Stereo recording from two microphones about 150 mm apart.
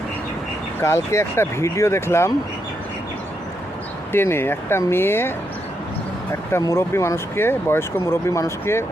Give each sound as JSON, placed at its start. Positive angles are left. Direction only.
{"t": 0.8, "sound": "speech", "side_deg": 15}
{"t": 4.1, "sound": "speech", "side_deg": 15}
{"t": 6.5, "sound": "speech", "side_deg": 20}